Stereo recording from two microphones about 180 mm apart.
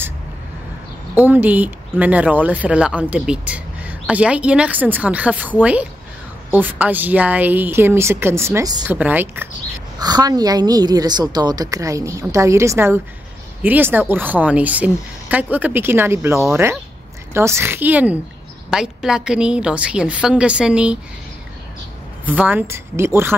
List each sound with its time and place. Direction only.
1.1 s speech: 10° right (ahead or behind)
8.8 s speech: 10° right (ahead or behind)
9.9 s a woman's voice: 20° right (ahead or behind); by 21.0 s 5° right (ahead or behind)
22.4 s speech: 10° right (ahead or behind)